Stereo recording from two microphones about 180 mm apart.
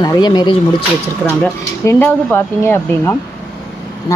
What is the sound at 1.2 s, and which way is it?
Speech, 10° left (ahead or behind).